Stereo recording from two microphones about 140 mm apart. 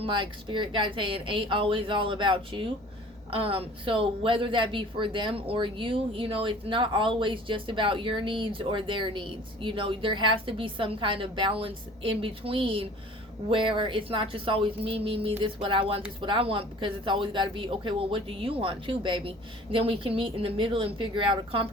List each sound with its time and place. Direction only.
0.0 s a woman's voice: 35° right (ahead or behind)